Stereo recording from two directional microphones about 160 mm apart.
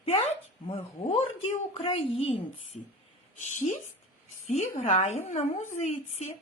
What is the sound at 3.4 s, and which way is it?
Speech, 45° left (ahead or behind).